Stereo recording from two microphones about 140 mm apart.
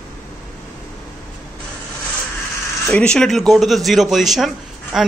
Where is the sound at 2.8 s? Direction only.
10° left (ahead or behind).